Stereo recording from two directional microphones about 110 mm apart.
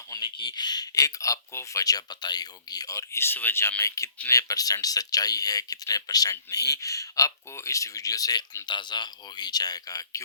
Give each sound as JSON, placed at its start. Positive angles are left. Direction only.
{"t": 0.2, "sound": "speech", "side_deg": 45}